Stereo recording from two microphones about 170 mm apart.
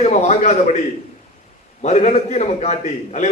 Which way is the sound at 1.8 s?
40° left (ahead or behind).